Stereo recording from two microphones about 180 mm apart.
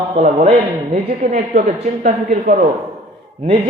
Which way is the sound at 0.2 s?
35° right (ahead or behind).